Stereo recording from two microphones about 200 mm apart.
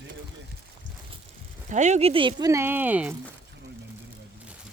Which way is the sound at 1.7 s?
35° right (ahead or behind).